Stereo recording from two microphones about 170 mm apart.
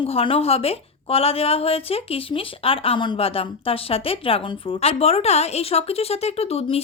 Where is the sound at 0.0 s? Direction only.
35° left (ahead or behind).